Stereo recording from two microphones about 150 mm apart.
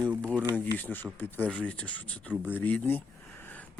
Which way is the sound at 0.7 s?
10° left (ahead or behind).